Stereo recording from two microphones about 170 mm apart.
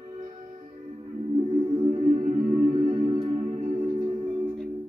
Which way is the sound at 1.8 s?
45° right (ahead or behind).